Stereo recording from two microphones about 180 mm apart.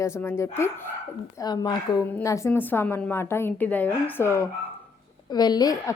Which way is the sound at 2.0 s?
15° left (ahead or behind).